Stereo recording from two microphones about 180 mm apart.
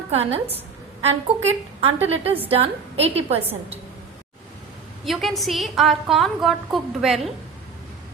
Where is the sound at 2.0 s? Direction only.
35° right (ahead or behind).